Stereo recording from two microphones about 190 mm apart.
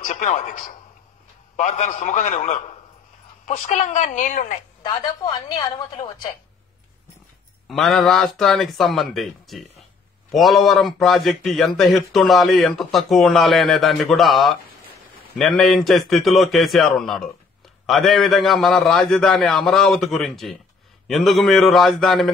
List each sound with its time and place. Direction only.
0.0 s a man's voice: 40° left (ahead or behind)
4.8 s a woman's voice: 20° left (ahead or behind)
7.6 s a man's voice: centre (ahead or behind)